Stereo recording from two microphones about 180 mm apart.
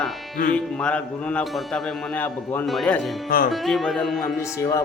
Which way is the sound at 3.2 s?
55° left (ahead or behind).